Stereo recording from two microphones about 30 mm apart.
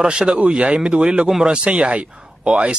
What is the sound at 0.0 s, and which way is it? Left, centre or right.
A man's voice, right.